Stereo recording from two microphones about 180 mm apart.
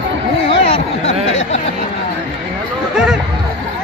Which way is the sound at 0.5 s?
35° left (ahead or behind).